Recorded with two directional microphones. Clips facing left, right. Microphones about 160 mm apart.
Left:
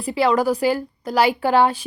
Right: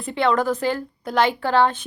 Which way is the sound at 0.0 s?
5° left (ahead or behind).